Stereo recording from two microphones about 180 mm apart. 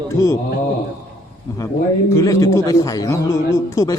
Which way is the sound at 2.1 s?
20° left (ahead or behind).